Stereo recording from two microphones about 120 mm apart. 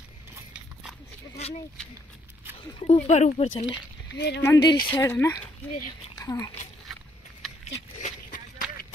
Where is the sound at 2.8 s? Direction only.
65° left (ahead or behind).